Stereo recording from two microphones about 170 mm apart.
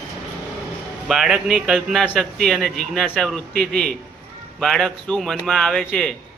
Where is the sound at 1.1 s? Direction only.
5° right (ahead or behind).